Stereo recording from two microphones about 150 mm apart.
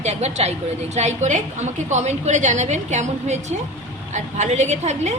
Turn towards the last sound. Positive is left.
turn(degrees=-50)  # may be behind; listen again after turning